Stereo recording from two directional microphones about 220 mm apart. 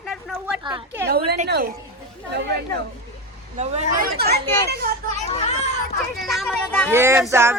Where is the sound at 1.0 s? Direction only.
45° right (ahead or behind).